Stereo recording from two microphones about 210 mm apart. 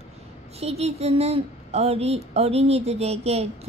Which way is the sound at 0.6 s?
30° right (ahead or behind).